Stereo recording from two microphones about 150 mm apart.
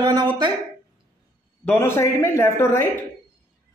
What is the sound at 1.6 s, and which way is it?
A man's voice, 15° left (ahead or behind).